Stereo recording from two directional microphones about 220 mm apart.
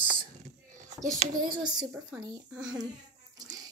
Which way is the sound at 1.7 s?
20° right (ahead or behind).